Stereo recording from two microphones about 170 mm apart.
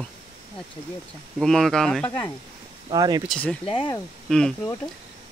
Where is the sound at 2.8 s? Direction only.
25° right (ahead or behind).